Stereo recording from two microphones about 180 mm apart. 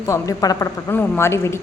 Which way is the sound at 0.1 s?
15° left (ahead or behind).